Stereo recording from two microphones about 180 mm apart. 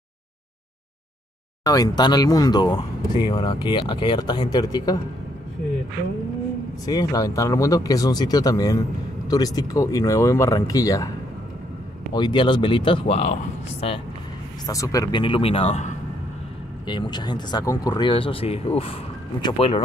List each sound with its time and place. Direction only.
1.6 s speech: 20° left (ahead or behind)
6.9 s speech: 20° left (ahead or behind)
12.1 s speech: 25° left (ahead or behind)
14.7 s speech: 20° left (ahead or behind); by 16.0 s 40° left (ahead or behind)
16.8 s speech: 25° left (ahead or behind)